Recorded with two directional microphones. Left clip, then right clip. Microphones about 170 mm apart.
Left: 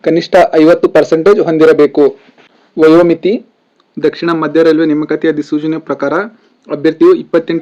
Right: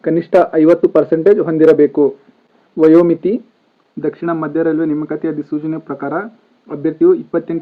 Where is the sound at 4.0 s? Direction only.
30° left (ahead or behind).